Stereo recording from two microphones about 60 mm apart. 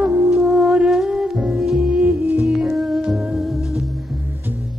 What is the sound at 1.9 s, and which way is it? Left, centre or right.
Music, right.